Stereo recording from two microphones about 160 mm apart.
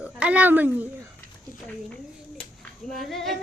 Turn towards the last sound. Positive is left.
turn(degrees=0)  # may be behind; listen again after turning